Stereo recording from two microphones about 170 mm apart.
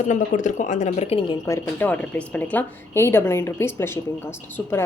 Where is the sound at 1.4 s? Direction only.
15° left (ahead or behind).